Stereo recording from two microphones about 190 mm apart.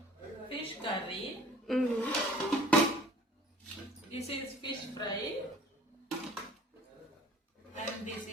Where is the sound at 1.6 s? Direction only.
Centre (ahead or behind).